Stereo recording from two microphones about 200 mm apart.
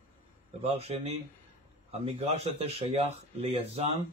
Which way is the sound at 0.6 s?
30° right (ahead or behind).